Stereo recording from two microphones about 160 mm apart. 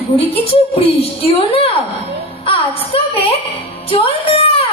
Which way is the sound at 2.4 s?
35° left (ahead or behind).